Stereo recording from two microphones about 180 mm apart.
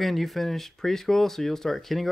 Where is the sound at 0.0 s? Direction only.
Centre (ahead or behind).